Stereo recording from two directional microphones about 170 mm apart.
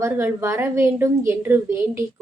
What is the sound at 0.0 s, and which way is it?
A woman's voice, 15° right (ahead or behind).